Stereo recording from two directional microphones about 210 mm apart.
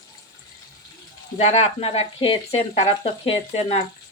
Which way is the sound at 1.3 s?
30° left (ahead or behind).